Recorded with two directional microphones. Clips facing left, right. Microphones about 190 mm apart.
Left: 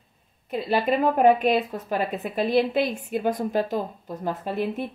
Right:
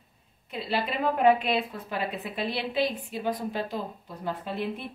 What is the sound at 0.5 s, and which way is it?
Speech, 45° left (ahead or behind).